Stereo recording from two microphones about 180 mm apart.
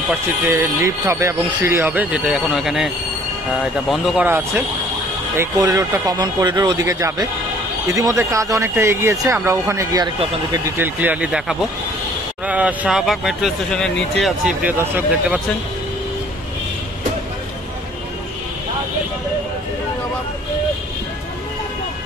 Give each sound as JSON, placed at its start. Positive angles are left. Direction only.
{"t": 0.1, "sound": "speech", "side_deg": -10}
{"t": 3.9, "sound": "speech", "side_deg": 0}
{"t": 5.4, "sound": "speech", "side_deg": -20}